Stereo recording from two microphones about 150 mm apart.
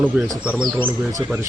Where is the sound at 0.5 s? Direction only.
Centre (ahead or behind).